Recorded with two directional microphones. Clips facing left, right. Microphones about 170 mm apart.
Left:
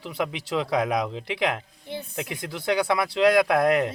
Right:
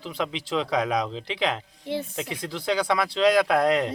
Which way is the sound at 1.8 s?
90° right.